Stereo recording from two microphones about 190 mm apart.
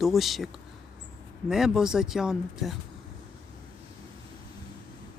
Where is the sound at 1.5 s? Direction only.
5° right (ahead or behind).